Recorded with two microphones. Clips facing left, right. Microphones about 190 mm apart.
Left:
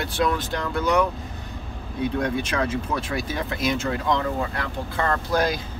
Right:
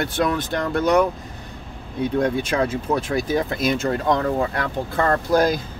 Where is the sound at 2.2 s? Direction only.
35° right (ahead or behind).